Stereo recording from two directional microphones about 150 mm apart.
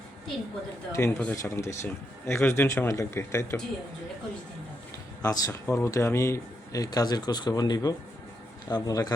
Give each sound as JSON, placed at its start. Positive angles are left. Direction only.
{"t": 0.9, "sound": "speech", "side_deg": 15}
{"t": 5.2, "sound": "speech", "side_deg": 25}